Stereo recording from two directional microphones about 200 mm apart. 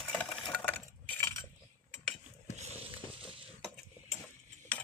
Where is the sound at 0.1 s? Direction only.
5° left (ahead or behind).